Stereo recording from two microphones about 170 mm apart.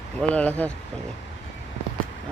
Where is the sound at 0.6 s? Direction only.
10° left (ahead or behind).